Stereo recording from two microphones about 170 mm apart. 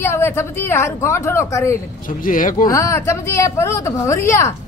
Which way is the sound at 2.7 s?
20° left (ahead or behind).